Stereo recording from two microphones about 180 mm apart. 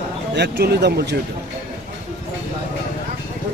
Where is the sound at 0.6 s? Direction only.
65° right (ahead or behind).